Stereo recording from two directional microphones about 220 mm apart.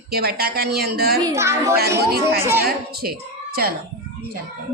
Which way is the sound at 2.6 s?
45° right (ahead or behind).